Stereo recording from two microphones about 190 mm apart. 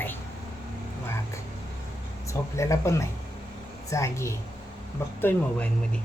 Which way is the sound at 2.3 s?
15° left (ahead or behind).